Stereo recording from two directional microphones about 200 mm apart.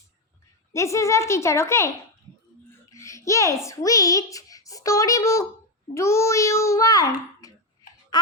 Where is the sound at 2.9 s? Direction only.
15° left (ahead or behind).